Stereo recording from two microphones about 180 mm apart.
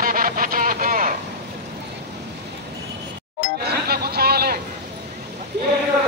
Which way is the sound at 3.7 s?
60° right (ahead or behind).